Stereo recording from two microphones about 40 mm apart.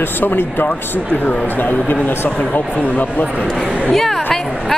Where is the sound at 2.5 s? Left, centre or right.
Left.